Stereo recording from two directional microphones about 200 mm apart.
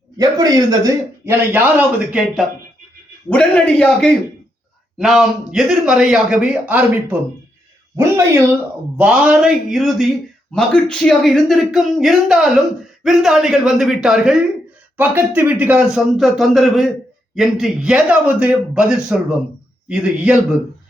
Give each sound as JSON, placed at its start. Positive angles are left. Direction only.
{"t": 0.2, "sound": "a man's voice", "side_deg": -20}